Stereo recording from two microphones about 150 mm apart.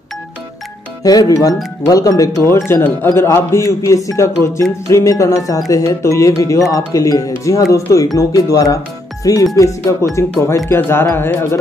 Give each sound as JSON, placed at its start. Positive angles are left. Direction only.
{"t": 1.0, "sound": "a man's voice", "side_deg": 25}